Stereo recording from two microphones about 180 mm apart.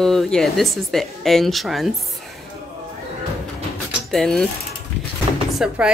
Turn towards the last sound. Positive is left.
turn(degrees=-5)  # may be behind; listen again after turning